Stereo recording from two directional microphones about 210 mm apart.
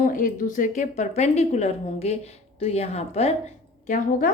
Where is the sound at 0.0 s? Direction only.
40° left (ahead or behind).